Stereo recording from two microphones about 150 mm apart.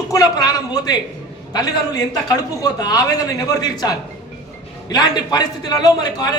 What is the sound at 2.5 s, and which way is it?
A man's voice, 25° left (ahead or behind).